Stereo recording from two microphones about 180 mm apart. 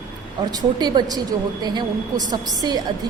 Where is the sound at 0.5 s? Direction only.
25° right (ahead or behind).